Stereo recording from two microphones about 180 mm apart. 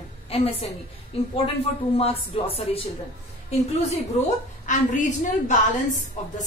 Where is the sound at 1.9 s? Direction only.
30° left (ahead or behind).